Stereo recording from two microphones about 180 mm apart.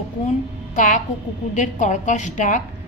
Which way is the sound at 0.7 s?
45° left (ahead or behind).